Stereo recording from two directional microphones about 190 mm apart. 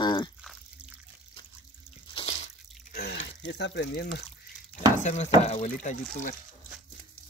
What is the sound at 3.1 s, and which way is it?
Speech, 65° left (ahead or behind).